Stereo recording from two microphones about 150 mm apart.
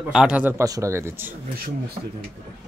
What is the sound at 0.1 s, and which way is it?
Speech, 5° right (ahead or behind).